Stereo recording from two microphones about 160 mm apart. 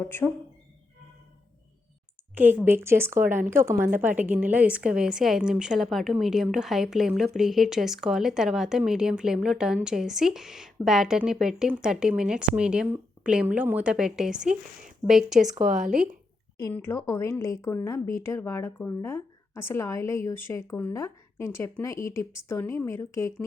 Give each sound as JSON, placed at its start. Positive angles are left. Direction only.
{"t": 0.0, "sound": "a woman's voice", "side_deg": 15}
{"t": 2.3, "sound": "a woman's voice", "side_deg": -10}
{"t": 15.5, "sound": "speech", "side_deg": -55}
{"t": 16.6, "sound": "a woman's voice", "side_deg": 15}